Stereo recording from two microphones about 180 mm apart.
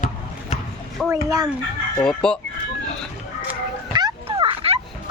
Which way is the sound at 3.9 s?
25° right (ahead or behind).